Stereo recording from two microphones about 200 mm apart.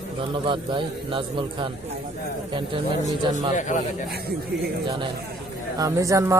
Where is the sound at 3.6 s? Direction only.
40° left (ahead or behind).